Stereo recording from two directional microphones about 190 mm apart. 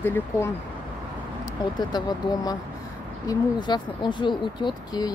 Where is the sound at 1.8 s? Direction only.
20° left (ahead or behind).